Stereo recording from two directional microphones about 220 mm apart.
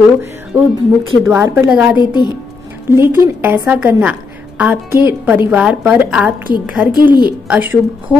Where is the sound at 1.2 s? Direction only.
10° right (ahead or behind).